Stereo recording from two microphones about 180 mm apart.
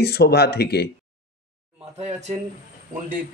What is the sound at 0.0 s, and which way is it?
Speech, 60° left (ahead or behind).